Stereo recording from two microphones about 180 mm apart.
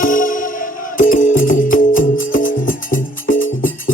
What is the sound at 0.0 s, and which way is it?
Music, 50° left (ahead or behind).